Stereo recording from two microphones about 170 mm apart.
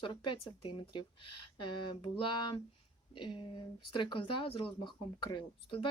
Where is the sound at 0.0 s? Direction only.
25° left (ahead or behind).